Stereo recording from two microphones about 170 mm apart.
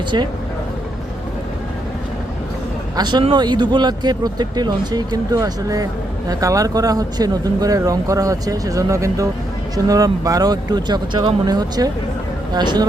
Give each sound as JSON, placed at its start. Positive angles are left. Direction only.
{"t": 2.9, "sound": "speech", "side_deg": -25}